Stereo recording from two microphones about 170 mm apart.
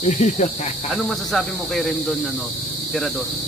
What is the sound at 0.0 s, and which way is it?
Speech, 45° left (ahead or behind).